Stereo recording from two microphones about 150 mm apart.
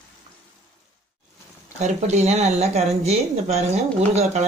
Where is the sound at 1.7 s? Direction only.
50° right (ahead or behind).